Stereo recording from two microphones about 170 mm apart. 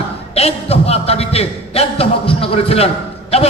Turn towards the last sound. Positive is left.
turn(degrees=35)  # may be behind; listen again after turning